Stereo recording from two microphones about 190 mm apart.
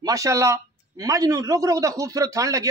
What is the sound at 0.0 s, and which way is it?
A man's voice, 15° right (ahead or behind).